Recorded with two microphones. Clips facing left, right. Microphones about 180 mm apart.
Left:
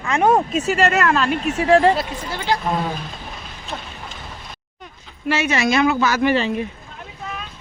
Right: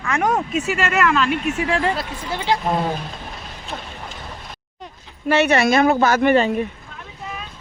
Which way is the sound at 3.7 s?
10° right (ahead or behind).